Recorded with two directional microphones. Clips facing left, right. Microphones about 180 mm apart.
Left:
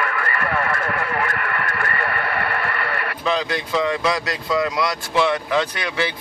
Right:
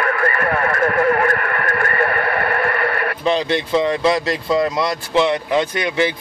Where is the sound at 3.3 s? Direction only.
25° right (ahead or behind).